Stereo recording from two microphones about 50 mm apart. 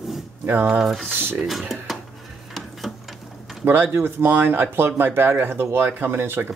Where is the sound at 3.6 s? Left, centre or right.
Right.